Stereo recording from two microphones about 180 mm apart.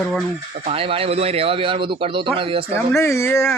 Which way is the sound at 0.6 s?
30° right (ahead or behind).